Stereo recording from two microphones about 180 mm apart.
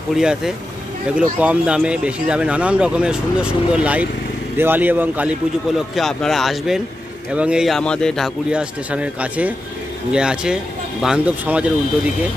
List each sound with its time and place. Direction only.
0.1 s a man's voice: 5° right (ahead or behind)
5.9 s a man's voice: centre (ahead or behind)